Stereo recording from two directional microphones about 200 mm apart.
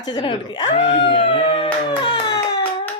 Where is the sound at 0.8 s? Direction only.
60° left (ahead or behind).